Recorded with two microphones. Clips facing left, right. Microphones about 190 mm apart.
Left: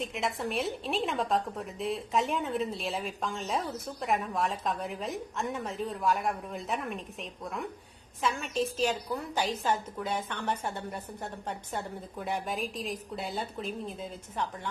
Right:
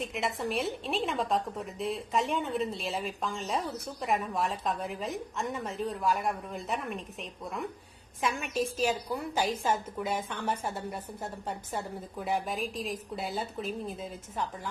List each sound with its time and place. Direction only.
0.0 s a woman's voice: centre (ahead or behind)
8.2 s a woman's voice: 10° right (ahead or behind)